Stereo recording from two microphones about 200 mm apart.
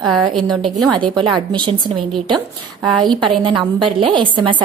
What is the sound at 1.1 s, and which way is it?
Speech, 25° right (ahead or behind).